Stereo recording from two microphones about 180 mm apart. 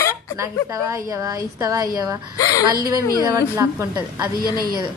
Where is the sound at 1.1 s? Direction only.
20° right (ahead or behind).